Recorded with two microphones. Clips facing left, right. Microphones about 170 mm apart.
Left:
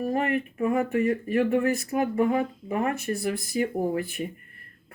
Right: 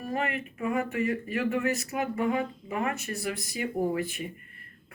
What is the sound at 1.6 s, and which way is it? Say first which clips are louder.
Speech: left 4 dB; 55° left (ahead or behind).